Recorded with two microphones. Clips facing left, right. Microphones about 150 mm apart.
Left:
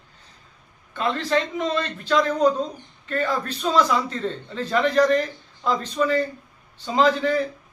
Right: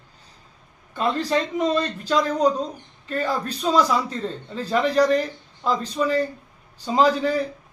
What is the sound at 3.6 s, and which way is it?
Speech, 10° right (ahead or behind).